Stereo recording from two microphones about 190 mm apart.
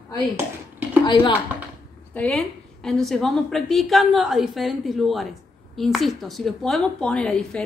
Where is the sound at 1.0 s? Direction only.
25° left (ahead or behind).